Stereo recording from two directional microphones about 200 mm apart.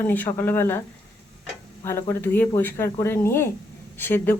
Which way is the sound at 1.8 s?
10° left (ahead or behind).